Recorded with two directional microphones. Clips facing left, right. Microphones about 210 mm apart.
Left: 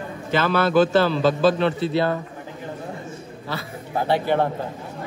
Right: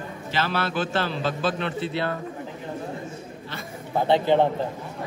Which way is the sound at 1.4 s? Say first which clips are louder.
Left 7 dB; 40° left (ahead or behind).